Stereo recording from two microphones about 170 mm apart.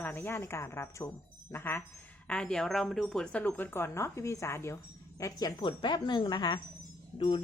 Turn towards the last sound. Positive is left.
turn(degrees=30)  # may be behind; listen again after turning